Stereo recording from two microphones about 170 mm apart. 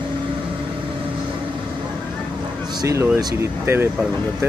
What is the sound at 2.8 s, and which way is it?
Speech, 20° right (ahead or behind).